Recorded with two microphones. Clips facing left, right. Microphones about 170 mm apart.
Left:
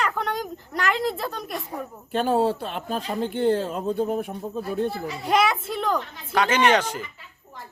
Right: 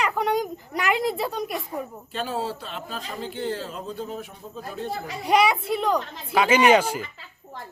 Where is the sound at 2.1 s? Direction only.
55° left (ahead or behind).